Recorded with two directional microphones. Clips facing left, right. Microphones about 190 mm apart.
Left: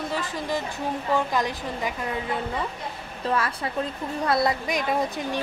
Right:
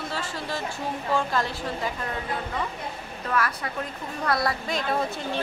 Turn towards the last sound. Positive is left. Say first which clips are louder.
# left 3 dB
turn(degrees=20)  # may be behind; listen again after turning